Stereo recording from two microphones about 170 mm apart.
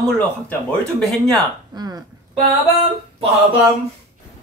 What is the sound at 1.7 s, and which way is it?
Speech, 25° right (ahead or behind).